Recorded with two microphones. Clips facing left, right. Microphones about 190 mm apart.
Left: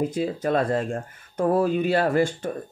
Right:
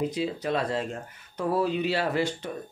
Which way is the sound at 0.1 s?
50° left (ahead or behind).